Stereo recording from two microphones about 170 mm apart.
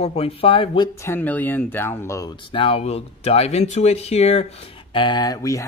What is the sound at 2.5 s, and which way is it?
Speech, 30° left (ahead or behind).